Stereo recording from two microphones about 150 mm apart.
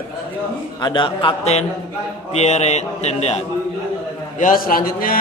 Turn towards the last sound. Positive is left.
turn(degrees=75)  # may be behind; listen again after turning